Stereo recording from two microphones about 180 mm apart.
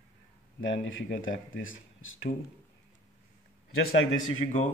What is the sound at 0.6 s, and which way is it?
Speech, 90° left.